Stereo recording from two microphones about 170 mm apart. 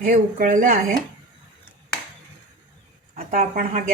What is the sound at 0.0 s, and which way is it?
Speech, 50° right (ahead or behind).